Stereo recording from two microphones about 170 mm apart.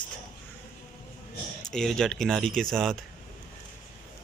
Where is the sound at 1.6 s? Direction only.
5° left (ahead or behind).